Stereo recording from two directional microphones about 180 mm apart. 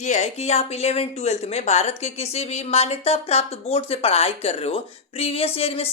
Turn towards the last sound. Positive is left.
turn(degrees=35)  # may be behind; listen again after turning